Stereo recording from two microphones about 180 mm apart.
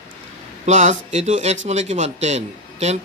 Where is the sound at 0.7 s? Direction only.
40° right (ahead or behind).